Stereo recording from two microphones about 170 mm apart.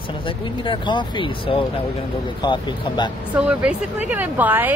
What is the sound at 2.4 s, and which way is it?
Speech, 25° left (ahead or behind).